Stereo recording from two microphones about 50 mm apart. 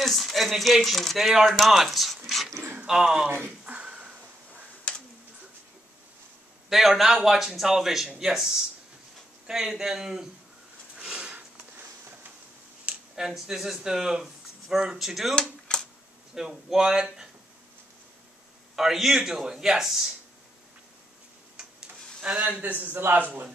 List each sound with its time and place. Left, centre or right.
0.0 s speech: centre
2.9 s speech: centre
3.6 s a sound: right
6.7 s a man's voice: centre
11.0 s sniff: centre
11.3 s a sound: right
13.1 s speech: centre
15.7 s a sound: centre
16.3 s speech: centre
18.8 s speech: centre
21.5 s tick-tock: centre
22.6 s a man's voice: right
23.2 s a man's voice: right